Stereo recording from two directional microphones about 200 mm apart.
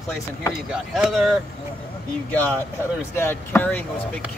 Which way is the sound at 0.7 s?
Centre (ahead or behind).